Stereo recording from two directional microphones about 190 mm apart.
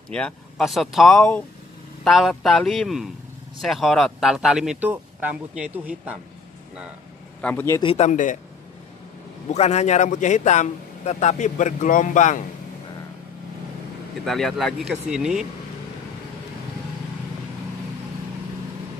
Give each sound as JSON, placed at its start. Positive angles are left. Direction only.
{"t": 0.1, "sound": "speech", "side_deg": 5}
{"t": 7.4, "sound": "a man's voice", "side_deg": 10}
{"t": 7.8, "sound": "a man's voice", "side_deg": 30}
{"t": 9.5, "sound": "a man's voice", "side_deg": 35}
{"t": 14.2, "sound": "speech", "side_deg": 0}